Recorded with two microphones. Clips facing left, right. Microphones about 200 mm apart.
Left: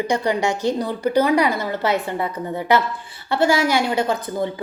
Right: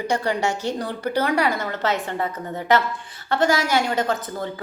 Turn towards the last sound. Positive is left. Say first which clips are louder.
# left 2 dB
turn(degrees=10)  # may be behind; listen again after turning